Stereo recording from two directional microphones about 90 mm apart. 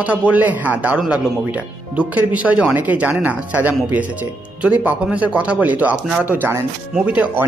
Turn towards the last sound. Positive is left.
turn(degrees=-15)  # may be behind; listen again after turning